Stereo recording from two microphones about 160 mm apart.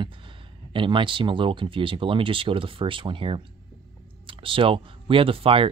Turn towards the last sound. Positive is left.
turn(degrees=-35)  # may be behind; listen again after turning